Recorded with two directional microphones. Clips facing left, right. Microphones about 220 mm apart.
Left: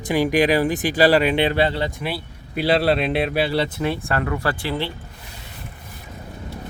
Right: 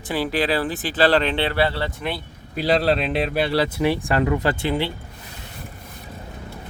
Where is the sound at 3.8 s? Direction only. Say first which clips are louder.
Right 3 dB; 15° right (ahead or behind).